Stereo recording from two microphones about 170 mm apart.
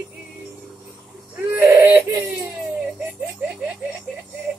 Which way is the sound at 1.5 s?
10° right (ahead or behind).